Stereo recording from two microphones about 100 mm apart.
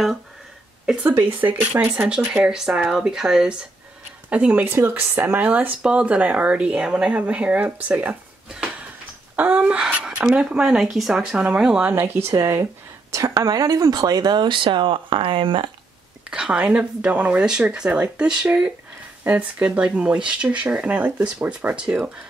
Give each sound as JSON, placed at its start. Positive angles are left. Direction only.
{"t": 1.1, "sound": "speech", "side_deg": -15}
{"t": 11.9, "sound": "speech", "side_deg": -25}
{"t": 16.3, "sound": "speech", "side_deg": -10}